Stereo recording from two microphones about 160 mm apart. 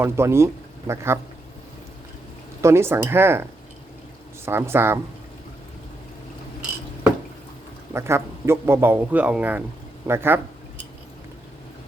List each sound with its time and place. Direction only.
0.0 s speech: 15° right (ahead or behind)
2.6 s speech: 15° right (ahead or behind)
4.4 s speech: 15° right (ahead or behind)
7.9 s speech: 15° right (ahead or behind)